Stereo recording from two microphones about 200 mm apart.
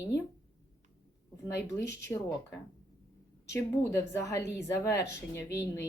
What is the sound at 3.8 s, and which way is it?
A woman's voice, 15° left (ahead or behind).